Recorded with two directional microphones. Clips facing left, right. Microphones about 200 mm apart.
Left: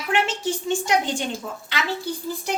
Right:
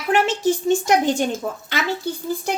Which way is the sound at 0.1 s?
40° right (ahead or behind).